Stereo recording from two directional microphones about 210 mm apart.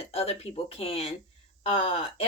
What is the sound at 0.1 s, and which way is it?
A woman's voice, 30° left (ahead or behind).